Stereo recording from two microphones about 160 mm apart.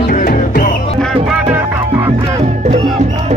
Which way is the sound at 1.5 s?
15° right (ahead or behind).